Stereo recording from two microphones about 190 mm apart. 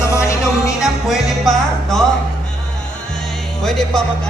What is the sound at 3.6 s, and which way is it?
Music, centre (ahead or behind).